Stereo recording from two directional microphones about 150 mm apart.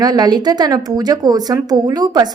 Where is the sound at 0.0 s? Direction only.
25° right (ahead or behind).